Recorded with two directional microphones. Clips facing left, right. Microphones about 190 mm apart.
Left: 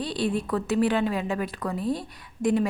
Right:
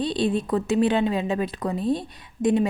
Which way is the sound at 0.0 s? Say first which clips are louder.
Right 3 dB; 20° right (ahead or behind).